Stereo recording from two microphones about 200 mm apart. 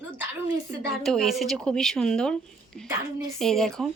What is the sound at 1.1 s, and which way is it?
Speech, centre (ahead or behind).